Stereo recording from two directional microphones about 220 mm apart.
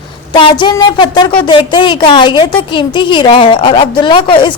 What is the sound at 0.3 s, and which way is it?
A woman's voice, 20° left (ahead or behind).